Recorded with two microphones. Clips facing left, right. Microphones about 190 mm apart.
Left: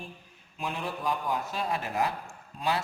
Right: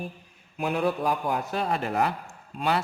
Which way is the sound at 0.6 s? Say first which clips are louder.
Right 8 dB; 60° right (ahead or behind).